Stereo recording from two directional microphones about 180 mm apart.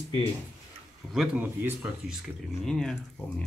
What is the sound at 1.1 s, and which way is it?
Speech, 5° right (ahead or behind).